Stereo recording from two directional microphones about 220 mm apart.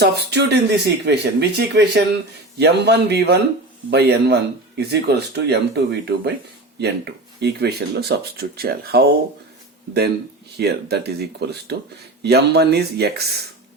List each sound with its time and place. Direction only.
0.0 s speech: 50° right (ahead or behind)
10.6 s speech: 45° right (ahead or behind)